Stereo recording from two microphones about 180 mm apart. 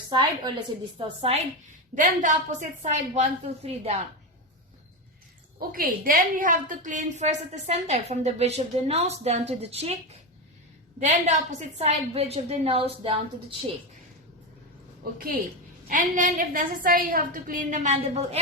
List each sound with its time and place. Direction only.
0.1 s a woman's voice: 25° right (ahead or behind)
2.0 s a woman's voice: 45° right (ahead or behind)
5.5 s a woman's voice: 55° right (ahead or behind); by 13.6 s 30° right (ahead or behind)
15.2 s a woman's voice: 55° right (ahead or behind); by 18.3 s 35° right (ahead or behind)